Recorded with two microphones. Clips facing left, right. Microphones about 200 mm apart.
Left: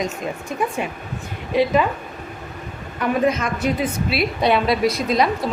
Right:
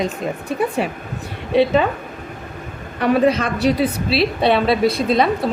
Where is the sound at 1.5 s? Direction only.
30° right (ahead or behind).